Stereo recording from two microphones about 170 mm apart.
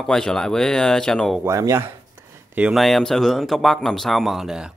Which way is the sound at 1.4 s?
20° right (ahead or behind).